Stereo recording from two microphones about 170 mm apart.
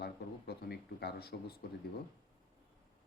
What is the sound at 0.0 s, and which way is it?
Speech, 70° left (ahead or behind).